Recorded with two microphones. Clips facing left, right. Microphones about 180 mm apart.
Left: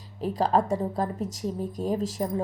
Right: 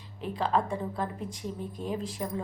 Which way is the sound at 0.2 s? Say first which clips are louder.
Left 5 dB; 40° left (ahead or behind).